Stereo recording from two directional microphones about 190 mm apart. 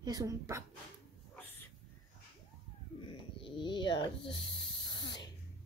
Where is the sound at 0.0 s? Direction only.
20° right (ahead or behind).